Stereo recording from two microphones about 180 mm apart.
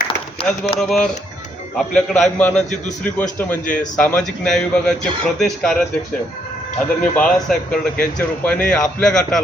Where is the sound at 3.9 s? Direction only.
5° left (ahead or behind).